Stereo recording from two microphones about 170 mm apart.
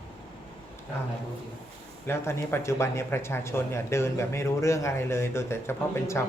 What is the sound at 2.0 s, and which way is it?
Speech, 15° left (ahead or behind).